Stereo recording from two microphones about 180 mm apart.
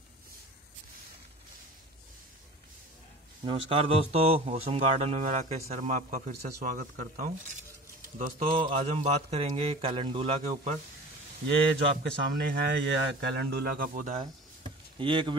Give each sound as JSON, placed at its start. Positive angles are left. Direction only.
{"t": 3.4, "sound": "a man's voice", "side_deg": -30}
{"t": 8.7, "sound": "a man's voice", "side_deg": -40}
{"t": 11.4, "sound": "a man's voice", "side_deg": -70}
{"t": 14.6, "sound": "a sound", "side_deg": -30}